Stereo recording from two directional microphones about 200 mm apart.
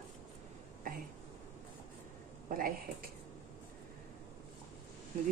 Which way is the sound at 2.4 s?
45° right (ahead or behind).